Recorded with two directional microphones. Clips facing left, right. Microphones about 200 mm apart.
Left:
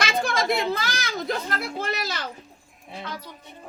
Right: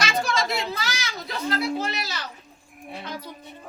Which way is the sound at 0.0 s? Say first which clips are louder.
Left 1 dB; 55° left (ahead or behind).